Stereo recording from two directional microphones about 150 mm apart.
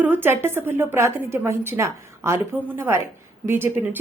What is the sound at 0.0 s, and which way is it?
A woman's voice, 15° right (ahead or behind).